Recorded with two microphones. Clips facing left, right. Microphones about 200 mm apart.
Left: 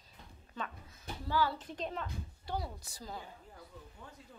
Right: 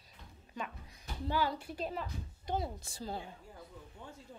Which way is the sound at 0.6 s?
15° right (ahead or behind).